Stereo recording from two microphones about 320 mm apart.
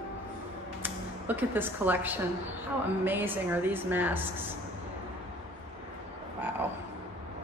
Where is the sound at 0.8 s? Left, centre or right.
Centre.